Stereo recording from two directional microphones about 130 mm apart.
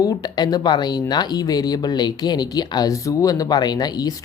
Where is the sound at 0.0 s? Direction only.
30° left (ahead or behind).